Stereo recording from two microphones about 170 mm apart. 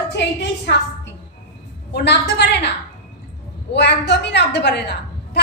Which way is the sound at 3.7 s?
90° left.